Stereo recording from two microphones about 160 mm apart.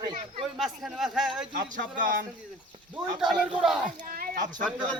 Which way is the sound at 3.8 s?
60° right (ahead or behind).